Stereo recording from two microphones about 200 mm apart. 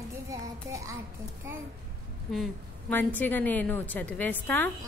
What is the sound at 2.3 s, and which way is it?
A woman's voice, 5° left (ahead or behind).